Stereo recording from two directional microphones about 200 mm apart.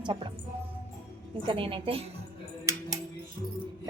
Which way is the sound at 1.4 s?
25° right (ahead or behind).